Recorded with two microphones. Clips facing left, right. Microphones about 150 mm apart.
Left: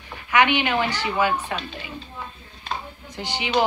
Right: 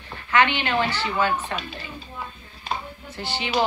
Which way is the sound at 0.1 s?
15° left (ahead or behind).